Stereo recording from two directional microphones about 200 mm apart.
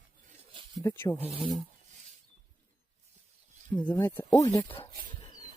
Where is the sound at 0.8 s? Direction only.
15° left (ahead or behind).